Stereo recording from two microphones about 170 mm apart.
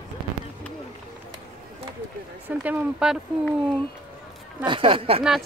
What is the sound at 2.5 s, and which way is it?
Speech, 10° right (ahead or behind).